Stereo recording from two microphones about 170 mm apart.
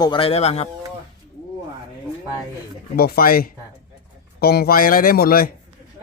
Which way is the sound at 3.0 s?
65° left (ahead or behind).